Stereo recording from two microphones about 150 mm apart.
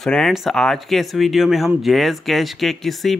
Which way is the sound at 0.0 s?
5° left (ahead or behind).